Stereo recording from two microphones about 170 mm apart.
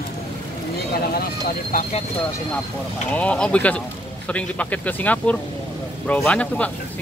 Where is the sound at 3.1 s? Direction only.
10° left (ahead or behind).